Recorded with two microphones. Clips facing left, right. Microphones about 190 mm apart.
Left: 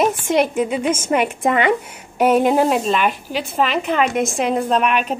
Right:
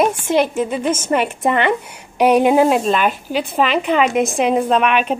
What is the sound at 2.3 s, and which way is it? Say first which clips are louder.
Speech: right 3 dB; 5° right (ahead or behind).